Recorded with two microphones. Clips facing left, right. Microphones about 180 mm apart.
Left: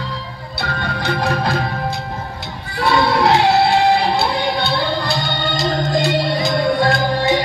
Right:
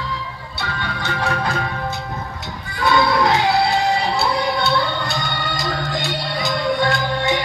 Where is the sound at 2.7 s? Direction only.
30° left (ahead or behind).